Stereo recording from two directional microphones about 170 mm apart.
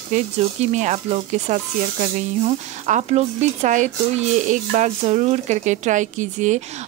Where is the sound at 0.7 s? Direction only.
40° right (ahead or behind).